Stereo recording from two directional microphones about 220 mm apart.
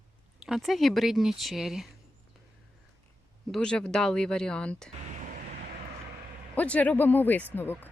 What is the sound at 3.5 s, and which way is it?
Speech, 5° left (ahead or behind).